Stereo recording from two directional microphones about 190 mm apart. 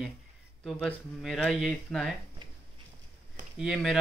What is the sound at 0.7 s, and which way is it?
Speech, centre (ahead or behind).